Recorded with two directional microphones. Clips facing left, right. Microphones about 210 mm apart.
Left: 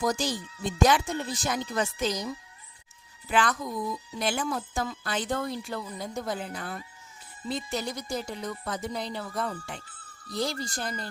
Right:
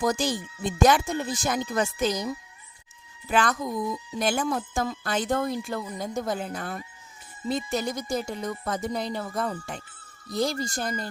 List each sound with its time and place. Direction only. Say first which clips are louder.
0.0 s speech: right 3 dB; 55° right (ahead or behind)
3.2 s speech: right 2 dB; 45° right (ahead or behind)